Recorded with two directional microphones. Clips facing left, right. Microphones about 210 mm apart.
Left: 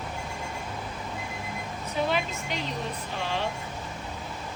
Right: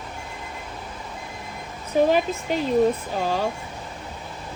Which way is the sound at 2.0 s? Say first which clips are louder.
Right 8 dB; 40° right (ahead or behind).